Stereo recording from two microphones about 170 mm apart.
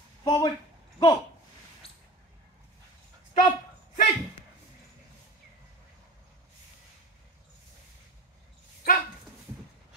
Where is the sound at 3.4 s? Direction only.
50° left (ahead or behind).